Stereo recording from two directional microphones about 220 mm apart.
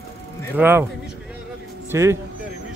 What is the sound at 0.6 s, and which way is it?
Speech, 10° right (ahead or behind).